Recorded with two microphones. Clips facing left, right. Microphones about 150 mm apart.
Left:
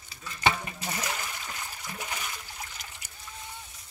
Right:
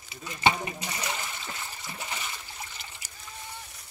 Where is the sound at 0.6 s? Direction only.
10° right (ahead or behind).